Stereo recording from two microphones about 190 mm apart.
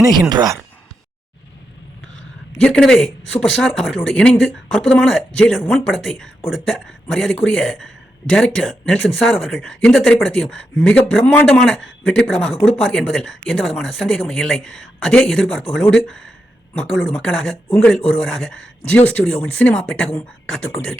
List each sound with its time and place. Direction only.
0.0 s speech: 20° right (ahead or behind)
2.6 s speech: 5° left (ahead or behind)